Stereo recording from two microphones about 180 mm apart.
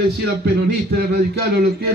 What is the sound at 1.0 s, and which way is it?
Speech, 60° right (ahead or behind).